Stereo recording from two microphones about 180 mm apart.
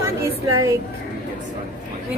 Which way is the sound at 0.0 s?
20° right (ahead or behind).